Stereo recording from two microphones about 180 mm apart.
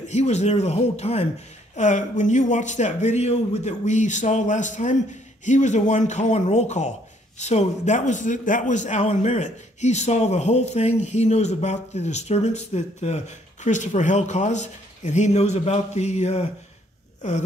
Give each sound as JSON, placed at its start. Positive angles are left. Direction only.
{"t": 0.1, "sound": "a man's voice", "side_deg": 40}